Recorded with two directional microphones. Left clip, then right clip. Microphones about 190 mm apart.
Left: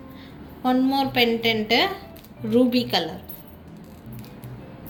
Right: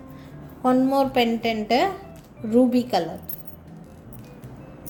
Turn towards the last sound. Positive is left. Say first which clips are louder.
# right 1 dB
turn(degrees=-45)  # may be behind; listen again after turning